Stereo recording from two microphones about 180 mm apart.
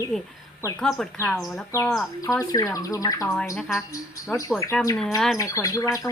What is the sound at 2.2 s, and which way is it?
Speech, 15° left (ahead or behind).